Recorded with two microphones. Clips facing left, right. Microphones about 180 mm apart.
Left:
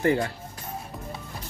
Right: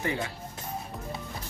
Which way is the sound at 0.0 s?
50° left (ahead or behind).